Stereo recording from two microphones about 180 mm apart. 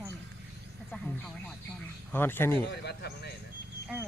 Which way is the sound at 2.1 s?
10° left (ahead or behind).